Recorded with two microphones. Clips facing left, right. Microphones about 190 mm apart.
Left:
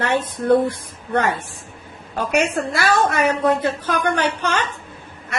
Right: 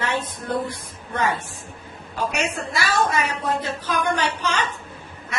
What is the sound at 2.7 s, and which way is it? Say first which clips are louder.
A woman's voice: left 3 dB; 55° left (ahead or behind).